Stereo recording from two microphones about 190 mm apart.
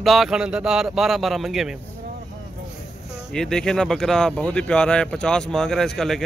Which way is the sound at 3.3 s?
5° left (ahead or behind).